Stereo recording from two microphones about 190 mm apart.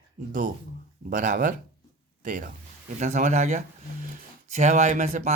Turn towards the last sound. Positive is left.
turn(degrees=-40)  # may be behind; listen again after turning